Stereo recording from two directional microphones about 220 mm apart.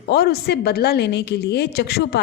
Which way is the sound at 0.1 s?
45° left (ahead or behind).